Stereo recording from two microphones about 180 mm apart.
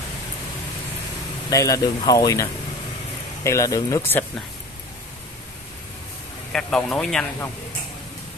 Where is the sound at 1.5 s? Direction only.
20° left (ahead or behind).